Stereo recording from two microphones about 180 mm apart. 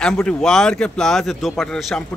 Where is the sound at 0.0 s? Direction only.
5° left (ahead or behind).